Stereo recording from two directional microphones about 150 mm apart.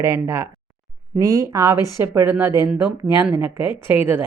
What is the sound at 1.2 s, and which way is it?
Speech, 25° right (ahead or behind).